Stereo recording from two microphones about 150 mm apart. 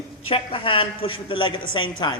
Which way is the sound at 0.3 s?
35° left (ahead or behind).